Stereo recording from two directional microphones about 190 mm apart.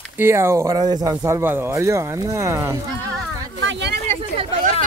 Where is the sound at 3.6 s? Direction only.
70° right (ahead or behind).